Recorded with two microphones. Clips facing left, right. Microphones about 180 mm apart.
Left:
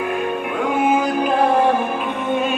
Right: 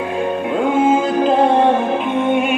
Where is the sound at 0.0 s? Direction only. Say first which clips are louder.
Right 2 dB; 25° right (ahead or behind).